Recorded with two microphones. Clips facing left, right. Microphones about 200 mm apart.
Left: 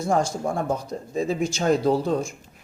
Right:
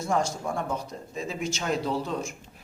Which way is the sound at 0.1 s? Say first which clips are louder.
Left 4 dB; 35° left (ahead or behind).